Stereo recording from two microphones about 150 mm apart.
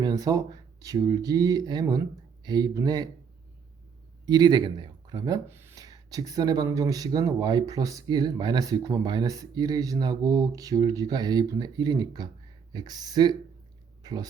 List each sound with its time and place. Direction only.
0.0 s speech: 25° right (ahead or behind)
4.3 s speech: 25° right (ahead or behind)